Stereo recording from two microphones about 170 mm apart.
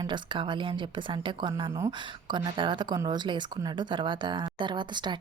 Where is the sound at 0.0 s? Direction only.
25° right (ahead or behind).